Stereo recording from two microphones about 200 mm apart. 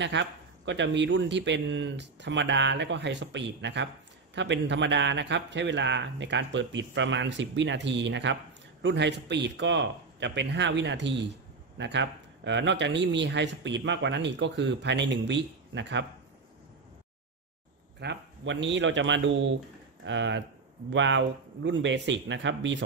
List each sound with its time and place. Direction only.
0.0 s speech: 65° right (ahead or behind)
18.0 s speech: 65° right (ahead or behind)